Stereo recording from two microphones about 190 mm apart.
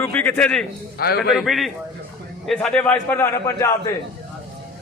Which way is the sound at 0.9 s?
55° left (ahead or behind).